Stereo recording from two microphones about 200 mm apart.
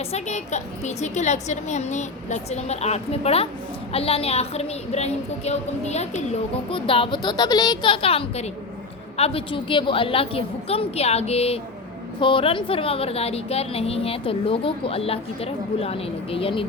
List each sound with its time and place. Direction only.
0.0 s a woman's voice: 35° left (ahead or behind)